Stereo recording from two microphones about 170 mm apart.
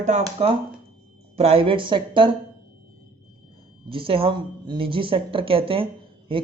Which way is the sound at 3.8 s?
30° right (ahead or behind).